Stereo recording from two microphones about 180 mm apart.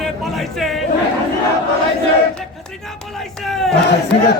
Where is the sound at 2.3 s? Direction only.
Centre (ahead or behind).